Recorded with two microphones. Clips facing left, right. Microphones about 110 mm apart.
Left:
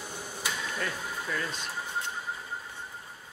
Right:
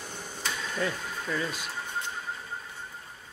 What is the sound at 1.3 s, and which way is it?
Speech, 10° right (ahead or behind).